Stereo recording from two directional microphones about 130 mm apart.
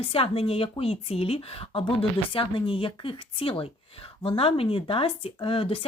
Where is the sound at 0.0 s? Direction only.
45° left (ahead or behind).